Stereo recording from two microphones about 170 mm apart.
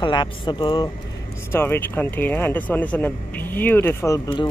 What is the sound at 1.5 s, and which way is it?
Speech, 10° left (ahead or behind).